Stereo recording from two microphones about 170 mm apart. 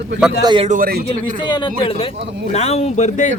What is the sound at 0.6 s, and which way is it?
Speech, 55° right (ahead or behind).